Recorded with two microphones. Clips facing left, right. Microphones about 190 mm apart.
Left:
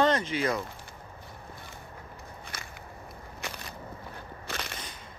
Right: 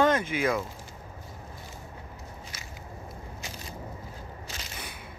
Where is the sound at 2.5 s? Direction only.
55° left (ahead or behind).